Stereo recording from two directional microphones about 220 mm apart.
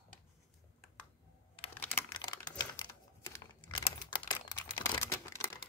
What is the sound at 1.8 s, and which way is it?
Computer keyboard, 10° left (ahead or behind).